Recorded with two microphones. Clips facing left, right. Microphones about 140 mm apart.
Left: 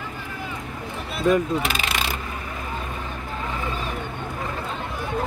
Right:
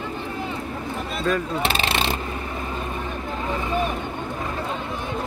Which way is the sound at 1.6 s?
30° right (ahead or behind).